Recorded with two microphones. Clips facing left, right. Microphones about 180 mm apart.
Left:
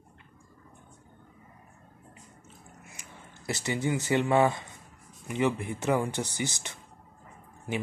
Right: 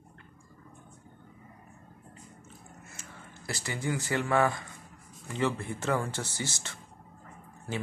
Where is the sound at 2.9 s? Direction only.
20° left (ahead or behind).